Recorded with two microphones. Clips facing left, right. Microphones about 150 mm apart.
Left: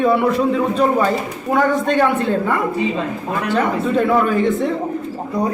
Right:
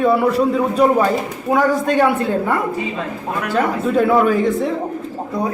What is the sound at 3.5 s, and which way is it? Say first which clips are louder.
A man's voice: right 1 dB; 5° right (ahead or behind).